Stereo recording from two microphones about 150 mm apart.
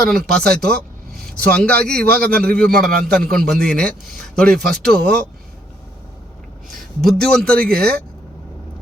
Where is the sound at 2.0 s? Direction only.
90° right.